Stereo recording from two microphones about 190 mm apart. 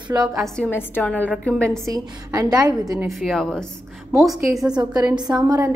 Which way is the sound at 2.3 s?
20° right (ahead or behind).